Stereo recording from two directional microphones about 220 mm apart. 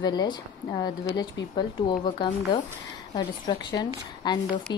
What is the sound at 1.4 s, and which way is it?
Speech, 55° left (ahead or behind).